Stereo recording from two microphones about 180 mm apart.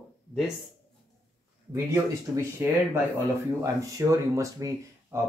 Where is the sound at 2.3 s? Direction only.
15° right (ahead or behind).